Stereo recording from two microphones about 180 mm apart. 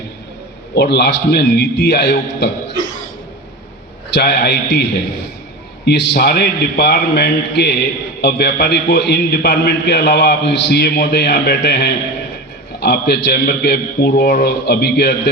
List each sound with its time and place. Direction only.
0.8 s a man's voice: 65° left (ahead or behind)
4.1 s a man's voice: 60° left (ahead or behind)